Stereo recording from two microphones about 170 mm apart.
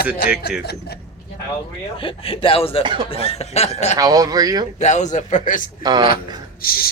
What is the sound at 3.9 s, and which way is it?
Speech, 20° right (ahead or behind).